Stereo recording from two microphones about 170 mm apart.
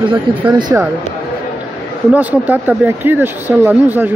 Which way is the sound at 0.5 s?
25° right (ahead or behind).